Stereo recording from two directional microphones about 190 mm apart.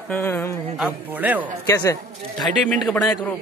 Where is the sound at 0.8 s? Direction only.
10° right (ahead or behind).